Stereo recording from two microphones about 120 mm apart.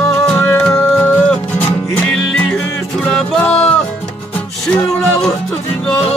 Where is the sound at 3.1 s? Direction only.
10° left (ahead or behind).